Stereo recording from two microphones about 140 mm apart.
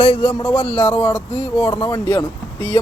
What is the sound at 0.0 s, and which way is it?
Speech, 35° left (ahead or behind).